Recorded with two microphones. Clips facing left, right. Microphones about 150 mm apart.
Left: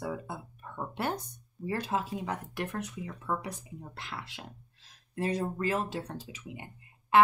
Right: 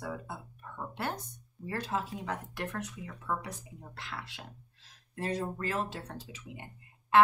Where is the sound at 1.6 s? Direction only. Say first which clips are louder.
Left 3 dB; 15° left (ahead or behind).